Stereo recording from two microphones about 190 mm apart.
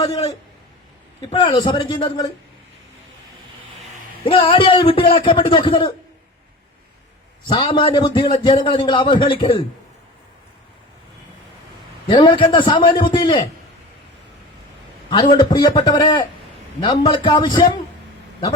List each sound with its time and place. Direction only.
0.1 s a man's voice: 35° left (ahead or behind)
4.2 s a man's voice: 30° left (ahead or behind)
7.4 s a man's voice: 25° left (ahead or behind)
12.0 s a man's voice: 25° left (ahead or behind)
15.1 s a man's voice: 25° left (ahead or behind)